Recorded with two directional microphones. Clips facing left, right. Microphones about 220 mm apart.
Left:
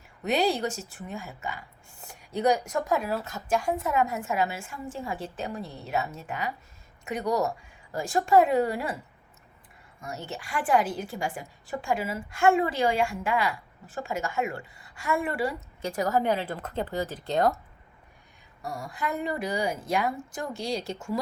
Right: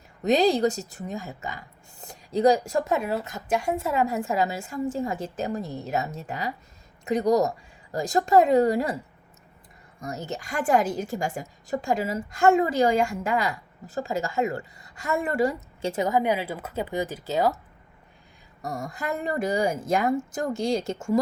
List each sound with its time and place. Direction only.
0.3 s a woman's voice: 35° right (ahead or behind)
10.0 s a woman's voice: 40° right (ahead or behind)
15.8 s speech: 25° right (ahead or behind); by 17.6 s 5° right (ahead or behind)
18.6 s a woman's voice: 45° right (ahead or behind)